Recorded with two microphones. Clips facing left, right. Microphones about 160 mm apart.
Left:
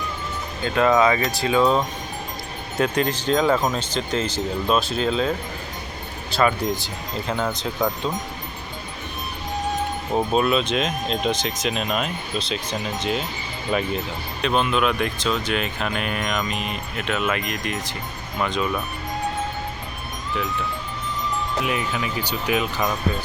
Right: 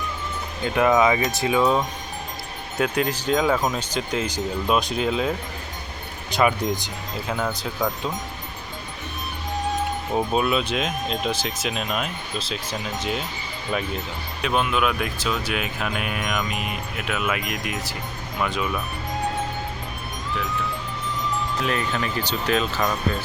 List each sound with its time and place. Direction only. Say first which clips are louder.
0.6 s speech: left 1 dB; 15° right (ahead or behind)
1.5 s speech: left 2 dB; 5° right (ahead or behind)
6.3 s speech: even; 20° right (ahead or behind)
7.5 s speech: left 2 dB; 5° right (ahead or behind)
10.3 s speech: left 3 dB; 5° right (ahead or behind)
21.6 s speech: even; 10° left (ahead or behind)